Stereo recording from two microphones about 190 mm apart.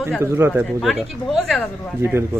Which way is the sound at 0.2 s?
15° right (ahead or behind).